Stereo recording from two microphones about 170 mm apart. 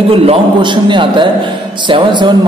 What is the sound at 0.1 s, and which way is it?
A man's voice, 30° right (ahead or behind).